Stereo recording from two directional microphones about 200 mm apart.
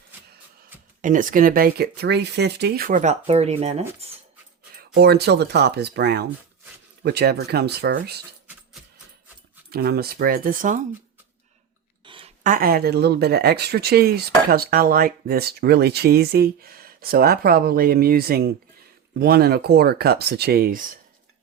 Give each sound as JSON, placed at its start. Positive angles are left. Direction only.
{"t": 1.0, "sound": "speech", "side_deg": -40}
{"t": 4.9, "sound": "speech", "side_deg": -55}
{"t": 9.6, "sound": "speech", "side_deg": -50}
{"t": 12.0, "sound": "a sound", "side_deg": -25}
{"t": 12.4, "sound": "speech", "side_deg": -45}